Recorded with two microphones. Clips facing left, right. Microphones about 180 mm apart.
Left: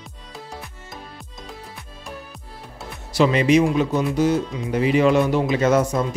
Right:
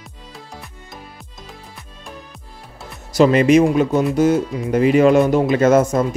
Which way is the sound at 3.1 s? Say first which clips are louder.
Right 4 dB; 45° right (ahead or behind).